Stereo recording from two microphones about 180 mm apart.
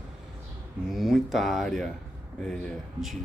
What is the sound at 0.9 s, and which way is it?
Speech, centre (ahead or behind).